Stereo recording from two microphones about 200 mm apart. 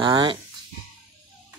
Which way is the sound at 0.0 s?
25° right (ahead or behind).